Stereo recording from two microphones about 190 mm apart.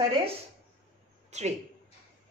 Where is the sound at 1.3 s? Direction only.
35° right (ahead or behind).